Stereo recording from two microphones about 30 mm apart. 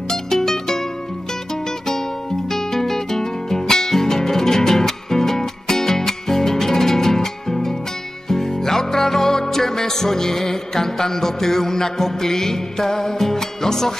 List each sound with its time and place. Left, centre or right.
0.1 s music: centre
2.5 s music: centre